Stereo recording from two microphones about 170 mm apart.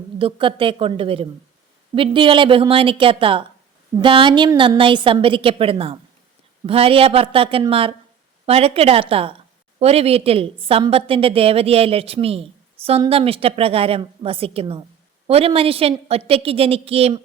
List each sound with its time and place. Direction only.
0.2 s a woman's voice: 30° right (ahead or behind)